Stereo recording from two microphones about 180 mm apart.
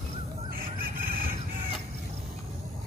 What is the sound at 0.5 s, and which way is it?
Squeal, 50° right (ahead or behind).